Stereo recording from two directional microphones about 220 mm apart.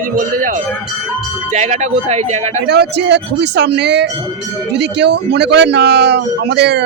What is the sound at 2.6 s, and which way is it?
A man's voice, 50° right (ahead or behind).